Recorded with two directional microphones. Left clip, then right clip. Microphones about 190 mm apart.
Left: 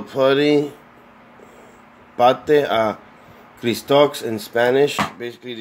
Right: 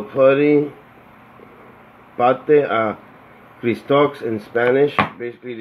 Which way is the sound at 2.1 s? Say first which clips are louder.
Even; 20° left (ahead or behind).